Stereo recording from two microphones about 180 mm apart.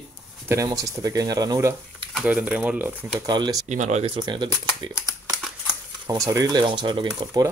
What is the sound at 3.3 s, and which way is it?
Speech, 25° right (ahead or behind).